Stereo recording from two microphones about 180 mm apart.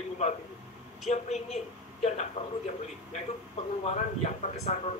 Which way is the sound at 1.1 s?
35° left (ahead or behind).